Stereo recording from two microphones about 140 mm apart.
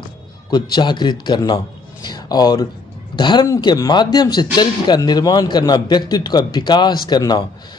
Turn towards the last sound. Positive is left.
turn(degrees=30)  # may be behind; listen again after turning